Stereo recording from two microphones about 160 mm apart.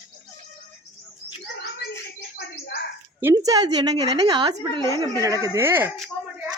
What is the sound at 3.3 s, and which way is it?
A woman's voice, 25° right (ahead or behind).